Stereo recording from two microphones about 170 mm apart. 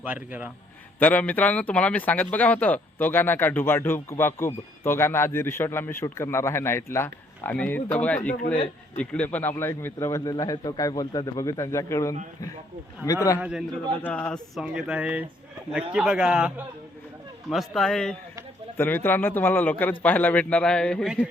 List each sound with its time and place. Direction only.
0.0 s a man's voice: 10° right (ahead or behind)
0.9 s a man's voice: 10° left (ahead or behind)
13.4 s speech: 5° right (ahead or behind)
14.0 s speech: 10° left (ahead or behind)